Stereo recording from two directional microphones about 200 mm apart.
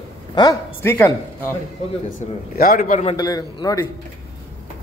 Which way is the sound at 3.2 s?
20° left (ahead or behind).